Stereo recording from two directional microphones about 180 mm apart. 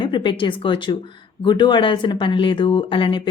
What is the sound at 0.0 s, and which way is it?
Speech, 25° left (ahead or behind).